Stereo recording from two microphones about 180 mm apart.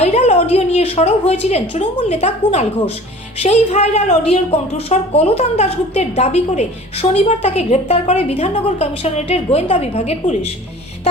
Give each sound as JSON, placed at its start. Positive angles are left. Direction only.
{"t": 0.0, "sound": "a woman's voice", "side_deg": 35}